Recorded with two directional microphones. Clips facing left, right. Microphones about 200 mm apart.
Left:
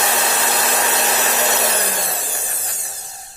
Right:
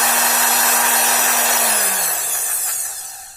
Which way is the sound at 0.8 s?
30° left (ahead or behind).